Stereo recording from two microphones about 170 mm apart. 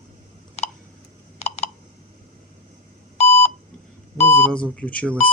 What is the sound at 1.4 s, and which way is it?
Typing, 40° left (ahead or behind).